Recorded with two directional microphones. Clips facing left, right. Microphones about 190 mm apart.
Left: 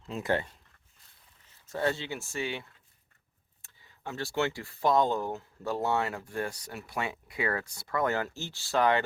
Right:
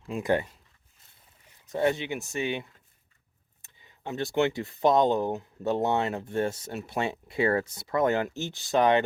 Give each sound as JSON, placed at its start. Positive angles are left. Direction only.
{"t": 0.1, "sound": "speech", "side_deg": -15}